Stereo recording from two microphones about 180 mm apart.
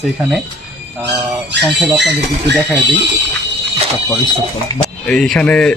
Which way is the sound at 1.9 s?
75° right (ahead or behind).